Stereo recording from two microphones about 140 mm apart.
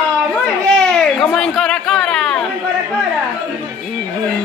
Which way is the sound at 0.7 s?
5° left (ahead or behind).